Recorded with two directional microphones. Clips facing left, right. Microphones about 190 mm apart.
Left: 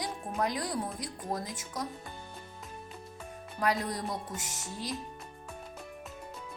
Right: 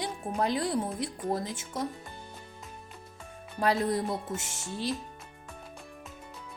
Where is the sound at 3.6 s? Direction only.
30° right (ahead or behind).